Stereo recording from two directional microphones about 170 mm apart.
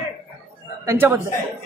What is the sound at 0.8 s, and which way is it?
Speech, 15° right (ahead or behind).